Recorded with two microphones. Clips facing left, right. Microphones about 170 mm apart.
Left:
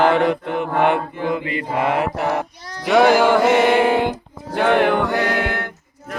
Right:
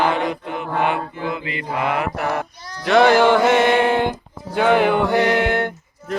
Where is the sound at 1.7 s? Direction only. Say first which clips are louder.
Left 2 dB; 25° left (ahead or behind).